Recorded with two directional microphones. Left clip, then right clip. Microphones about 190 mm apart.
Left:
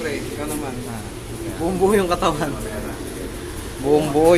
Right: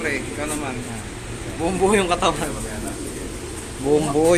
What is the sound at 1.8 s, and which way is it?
Speech, 15° left (ahead or behind).